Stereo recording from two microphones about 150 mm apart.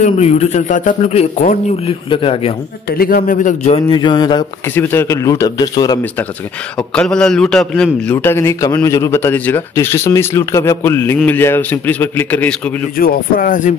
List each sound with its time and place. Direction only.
0.0 s speech: 50° left (ahead or behind)
1.9 s speech: 35° left (ahead or behind)
2.9 s speech: 85° left; by 3.5 s 65° left (ahead or behind)
3.6 s speech: 35° left (ahead or behind)
4.7 s a man's voice: 15° left (ahead or behind)
6.8 s a man's voice: 5° left (ahead or behind)
12.9 s speech: 75° left (ahead or behind)